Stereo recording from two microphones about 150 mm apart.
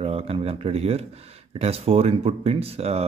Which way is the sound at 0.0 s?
40° right (ahead or behind).